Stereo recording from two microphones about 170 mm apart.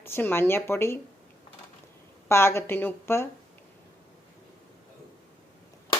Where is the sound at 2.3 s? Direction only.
15° left (ahead or behind).